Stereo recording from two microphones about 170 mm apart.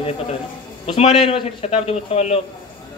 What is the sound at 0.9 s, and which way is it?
A man's voice, 35° left (ahead or behind).